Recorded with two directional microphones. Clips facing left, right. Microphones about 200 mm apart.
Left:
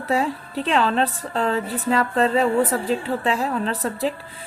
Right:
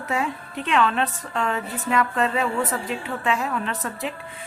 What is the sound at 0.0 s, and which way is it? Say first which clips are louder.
A woman's voice: left 4 dB; 35° left (ahead or behind).